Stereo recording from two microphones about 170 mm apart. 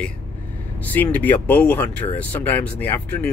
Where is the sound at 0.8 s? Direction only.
10° left (ahead or behind).